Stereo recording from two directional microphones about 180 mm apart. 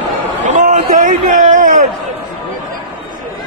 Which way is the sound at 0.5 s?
45° right (ahead or behind).